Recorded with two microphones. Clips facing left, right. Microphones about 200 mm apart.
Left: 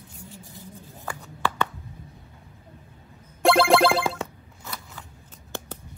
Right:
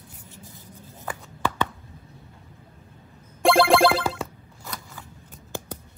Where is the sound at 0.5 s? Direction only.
20° right (ahead or behind).